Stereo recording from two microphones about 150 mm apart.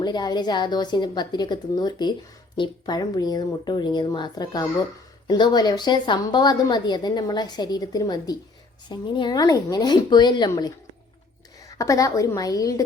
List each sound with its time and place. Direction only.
0.0 s a woman's voice: 30° left (ahead or behind)